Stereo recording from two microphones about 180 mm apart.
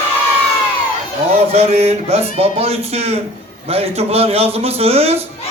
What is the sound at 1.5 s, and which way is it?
A man's voice, 35° right (ahead or behind).